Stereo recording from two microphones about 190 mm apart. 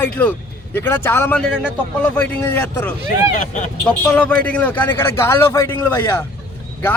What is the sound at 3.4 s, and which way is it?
Speech, 45° left (ahead or behind).